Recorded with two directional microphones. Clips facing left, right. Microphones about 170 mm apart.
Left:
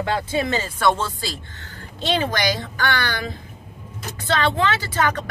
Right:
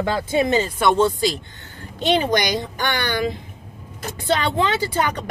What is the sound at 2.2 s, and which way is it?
A man's voice, 15° right (ahead or behind).